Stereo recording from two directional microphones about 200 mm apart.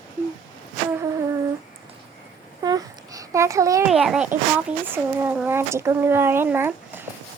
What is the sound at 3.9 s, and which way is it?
A child's voice, centre (ahead or behind).